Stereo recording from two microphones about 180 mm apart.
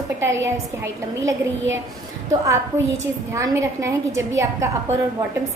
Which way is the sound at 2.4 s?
15° right (ahead or behind).